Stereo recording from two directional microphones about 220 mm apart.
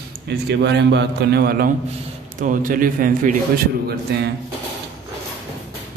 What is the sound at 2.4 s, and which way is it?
A man's voice, 40° right (ahead or behind).